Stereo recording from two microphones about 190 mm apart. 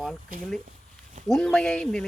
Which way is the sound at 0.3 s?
50° right (ahead or behind).